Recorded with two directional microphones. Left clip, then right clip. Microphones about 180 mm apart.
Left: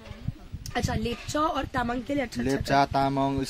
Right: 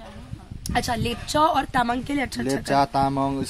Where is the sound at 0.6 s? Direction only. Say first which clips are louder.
Right 5 dB; 55° right (ahead or behind).